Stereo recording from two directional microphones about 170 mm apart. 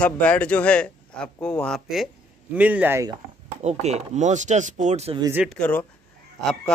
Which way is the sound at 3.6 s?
40° right (ahead or behind).